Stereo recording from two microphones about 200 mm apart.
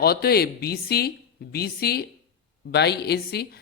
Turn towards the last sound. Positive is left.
turn(degrees=55)  # may be behind; listen again after turning